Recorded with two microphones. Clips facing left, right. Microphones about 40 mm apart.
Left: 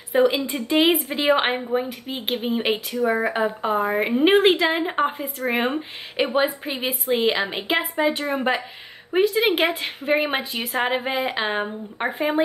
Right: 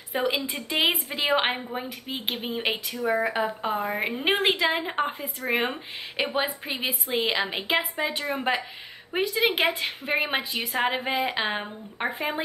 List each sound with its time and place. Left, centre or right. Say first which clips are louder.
0.1 s a woman's voice: left 7 dB; centre